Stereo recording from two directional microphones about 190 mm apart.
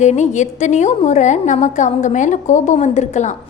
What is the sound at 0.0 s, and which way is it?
A woman's voice, 40° left (ahead or behind).